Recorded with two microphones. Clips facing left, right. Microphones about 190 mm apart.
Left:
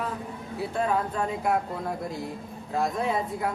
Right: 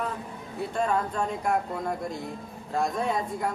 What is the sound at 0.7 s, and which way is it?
Speech, 5° left (ahead or behind).